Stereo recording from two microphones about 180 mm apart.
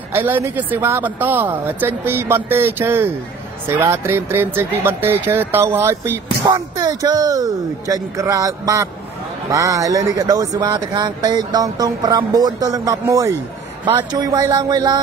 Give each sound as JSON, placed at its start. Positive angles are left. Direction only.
{"t": 0.1, "sound": "speech", "side_deg": -10}